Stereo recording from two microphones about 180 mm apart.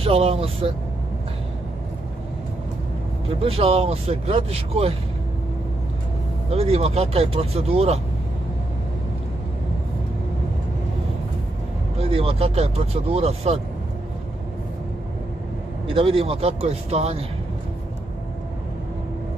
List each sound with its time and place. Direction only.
0.0 s speech: 35° right (ahead or behind)
3.3 s speech: 30° right (ahead or behind)
6.5 s speech: 35° right (ahead or behind)
12.0 s speech: 30° right (ahead or behind)
15.9 s speech: 30° right (ahead or behind)